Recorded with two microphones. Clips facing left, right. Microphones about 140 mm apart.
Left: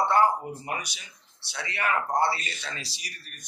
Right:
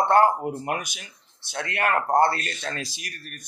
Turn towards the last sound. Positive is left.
turn(degrees=-50)  # may be behind; listen again after turning